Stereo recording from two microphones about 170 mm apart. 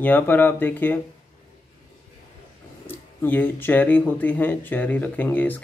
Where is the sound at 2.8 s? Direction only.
10° left (ahead or behind).